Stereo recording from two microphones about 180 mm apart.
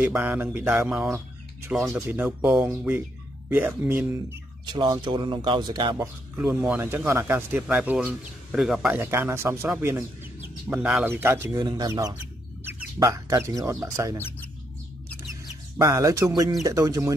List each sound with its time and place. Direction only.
0.0 s speech: 10° right (ahead or behind)
4.6 s speech: 25° right (ahead or behind)
5.9 s speech: 10° right (ahead or behind)
15.8 s speech: 20° right (ahead or behind)